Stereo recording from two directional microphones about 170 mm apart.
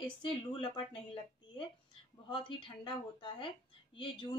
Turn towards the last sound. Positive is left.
turn(degrees=30)  # may be behind; listen again after turning